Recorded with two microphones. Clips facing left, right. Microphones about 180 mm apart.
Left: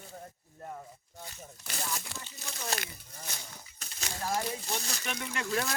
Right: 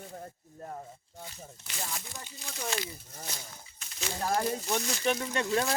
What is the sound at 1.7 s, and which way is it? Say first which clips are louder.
Speech: left 1 dB; 40° left (ahead or behind).